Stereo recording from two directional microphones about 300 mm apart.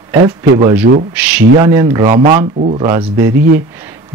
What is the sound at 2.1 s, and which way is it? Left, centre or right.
Speech, right.